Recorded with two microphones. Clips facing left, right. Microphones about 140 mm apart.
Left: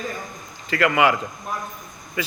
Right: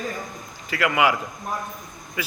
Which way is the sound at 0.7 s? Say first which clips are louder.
Left 2 dB; 10° right (ahead or behind).